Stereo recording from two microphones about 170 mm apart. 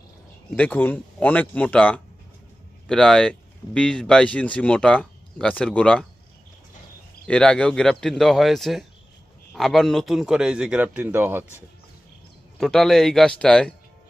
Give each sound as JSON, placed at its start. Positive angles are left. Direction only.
{"t": 0.6, "sound": "speech", "side_deg": 10}
{"t": 7.2, "sound": "speech", "side_deg": 5}
{"t": 12.5, "sound": "speech", "side_deg": 0}